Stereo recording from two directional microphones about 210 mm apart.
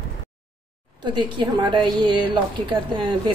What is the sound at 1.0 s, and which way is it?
A woman's voice, 20° right (ahead or behind).